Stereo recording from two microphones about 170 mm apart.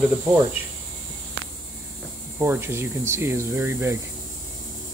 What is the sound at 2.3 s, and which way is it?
Speech, 15° right (ahead or behind).